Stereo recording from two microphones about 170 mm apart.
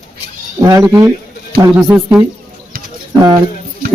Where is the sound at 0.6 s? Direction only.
20° right (ahead or behind).